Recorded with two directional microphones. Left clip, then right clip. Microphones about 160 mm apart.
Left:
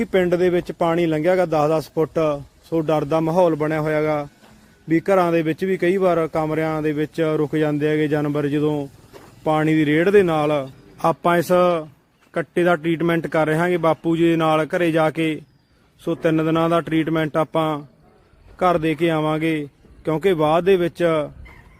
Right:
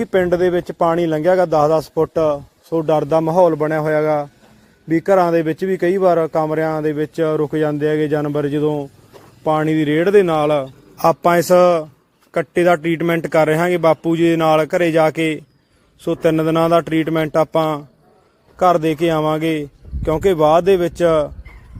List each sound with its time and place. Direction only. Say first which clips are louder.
0.8 s speech: right 5 dB; 5° left (ahead or behind)
2.8 s speech: right 5 dB; centre (ahead or behind)